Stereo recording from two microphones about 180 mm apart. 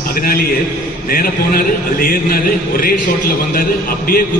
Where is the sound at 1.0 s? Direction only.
50° left (ahead or behind).